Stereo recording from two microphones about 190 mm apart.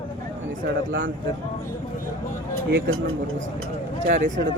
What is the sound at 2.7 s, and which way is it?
Speech, 80° right.